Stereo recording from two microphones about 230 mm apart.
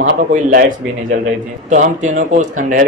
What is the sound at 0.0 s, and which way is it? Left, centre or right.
A man's voice, right.